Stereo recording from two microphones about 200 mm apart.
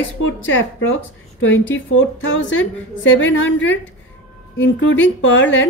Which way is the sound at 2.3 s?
70° left (ahead or behind).